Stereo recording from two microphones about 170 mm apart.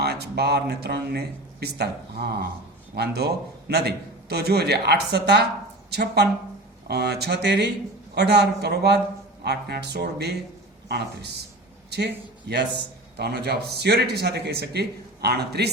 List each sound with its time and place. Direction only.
0.0 s a man's voice: 70° right (ahead or behind)